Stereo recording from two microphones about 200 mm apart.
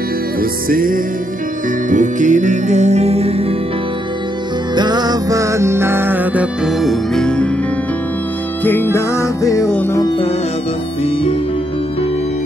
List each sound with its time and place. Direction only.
0.4 s music: 45° right (ahead or behind); by 3.4 s 30° right (ahead or behind)
4.7 s music: 20° right (ahead or behind); by 7.4 s 5° left (ahead or behind)
8.6 s music: 10° left (ahead or behind)